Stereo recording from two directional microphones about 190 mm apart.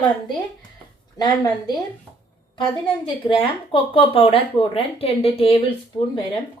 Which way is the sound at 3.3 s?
25° left (ahead or behind).